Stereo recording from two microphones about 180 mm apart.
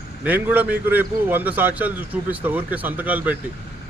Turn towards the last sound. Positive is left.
turn(degrees=-10)  # may be behind; listen again after turning